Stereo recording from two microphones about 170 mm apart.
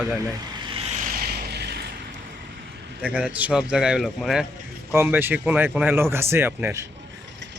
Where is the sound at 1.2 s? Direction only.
70° right (ahead or behind).